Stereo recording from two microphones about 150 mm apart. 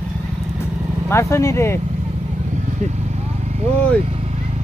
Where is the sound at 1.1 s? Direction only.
20° left (ahead or behind).